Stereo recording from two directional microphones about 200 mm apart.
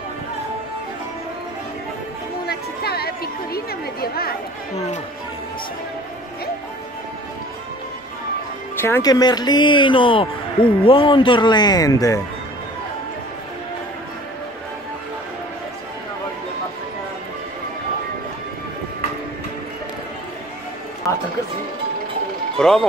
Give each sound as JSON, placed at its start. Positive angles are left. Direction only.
{"t": 2.4, "sound": "a woman's voice", "side_deg": 50}
{"t": 8.8, "sound": "a man's voice", "side_deg": 15}
{"t": 22.6, "sound": "speech", "side_deg": 5}